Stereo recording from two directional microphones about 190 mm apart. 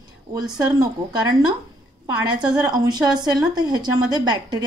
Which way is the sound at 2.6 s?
20° right (ahead or behind).